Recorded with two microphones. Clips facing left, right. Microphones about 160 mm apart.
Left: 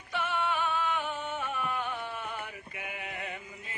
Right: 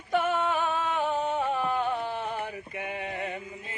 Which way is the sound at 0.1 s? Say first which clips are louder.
Right 6 dB; 45° right (ahead or behind).